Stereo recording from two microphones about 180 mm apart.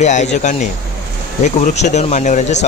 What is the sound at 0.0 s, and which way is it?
Speech, 40° left (ahead or behind).